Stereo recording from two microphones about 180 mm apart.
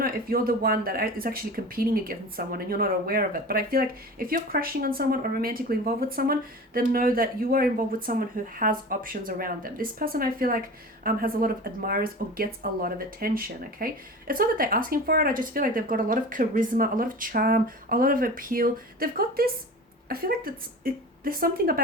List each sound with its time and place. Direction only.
0.0 s a woman's voice: 55° right (ahead or behind)